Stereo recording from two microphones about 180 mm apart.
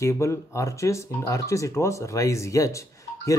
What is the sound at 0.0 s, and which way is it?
Speech, 15° left (ahead or behind).